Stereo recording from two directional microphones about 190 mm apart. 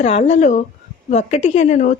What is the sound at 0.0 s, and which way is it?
Speech, 35° left (ahead or behind).